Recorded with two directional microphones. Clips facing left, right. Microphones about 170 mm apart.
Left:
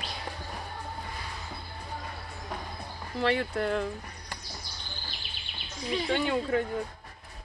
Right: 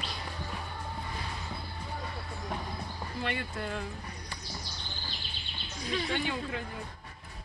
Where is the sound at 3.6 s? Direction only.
55° left (ahead or behind).